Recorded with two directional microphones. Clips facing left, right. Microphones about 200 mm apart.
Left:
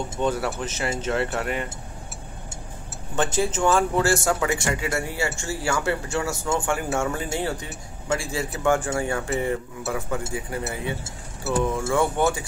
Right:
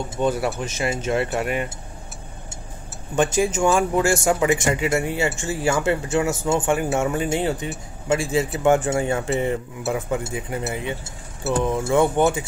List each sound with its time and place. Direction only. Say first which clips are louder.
0.2 s speech: right 3 dB; 10° right (ahead or behind)
3.2 s speech: right 4 dB; 15° right (ahead or behind)